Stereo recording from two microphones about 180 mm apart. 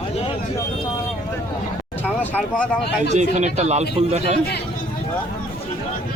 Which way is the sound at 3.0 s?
40° right (ahead or behind).